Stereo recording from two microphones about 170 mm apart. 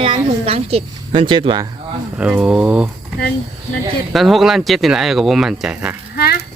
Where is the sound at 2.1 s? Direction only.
5° right (ahead or behind).